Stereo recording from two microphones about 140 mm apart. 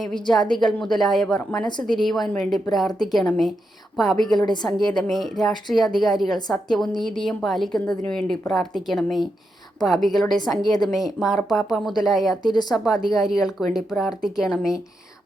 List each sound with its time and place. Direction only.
0.0 s a woman's voice: 5° left (ahead or behind)
4.3 s a woman's voice: 30° left (ahead or behind)
4.8 s a woman's voice: 5° left (ahead or behind)
10.5 s speech: 30° left (ahead or behind)
10.9 s a woman's voice: centre (ahead or behind)
12.3 s speech: 30° left (ahead or behind)
12.7 s a woman's voice: centre (ahead or behind)